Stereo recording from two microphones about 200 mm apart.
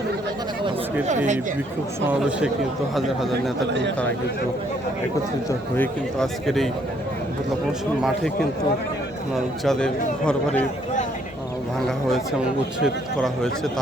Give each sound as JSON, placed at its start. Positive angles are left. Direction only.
{"t": 3.7, "sound": "speech", "side_deg": -60}
{"t": 5.5, "sound": "speech", "side_deg": 10}
{"t": 9.6, "sound": "speech", "side_deg": 5}
{"t": 12.8, "sound": "speech", "side_deg": 0}